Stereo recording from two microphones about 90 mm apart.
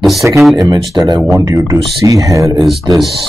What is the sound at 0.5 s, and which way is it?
Speech, 40° right (ahead or behind).